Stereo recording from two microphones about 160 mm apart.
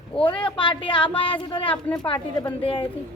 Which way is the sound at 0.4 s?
30° left (ahead or behind).